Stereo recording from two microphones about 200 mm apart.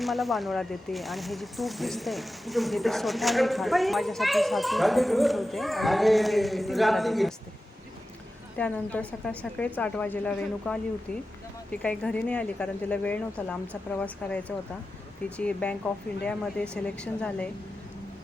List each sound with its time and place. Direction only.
0.0 s speech: centre (ahead or behind)
8.5 s speech: 5° left (ahead or behind)